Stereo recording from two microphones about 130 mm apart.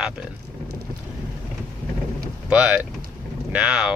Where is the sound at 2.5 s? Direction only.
10° right (ahead or behind).